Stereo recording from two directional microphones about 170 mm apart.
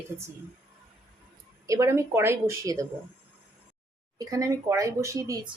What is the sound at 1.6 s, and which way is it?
A woman's voice, 20° right (ahead or behind).